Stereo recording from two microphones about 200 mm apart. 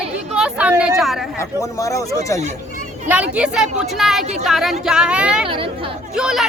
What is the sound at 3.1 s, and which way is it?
Speech, 5° right (ahead or behind).